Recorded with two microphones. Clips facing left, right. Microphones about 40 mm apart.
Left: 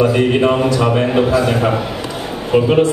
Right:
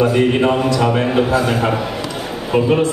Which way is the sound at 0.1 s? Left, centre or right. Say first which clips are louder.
Left 1 dB; centre.